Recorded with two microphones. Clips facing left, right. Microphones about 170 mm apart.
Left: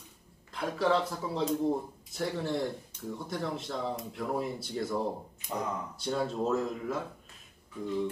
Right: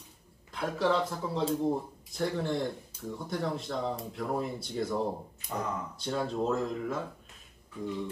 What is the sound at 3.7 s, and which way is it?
Speech, centre (ahead or behind).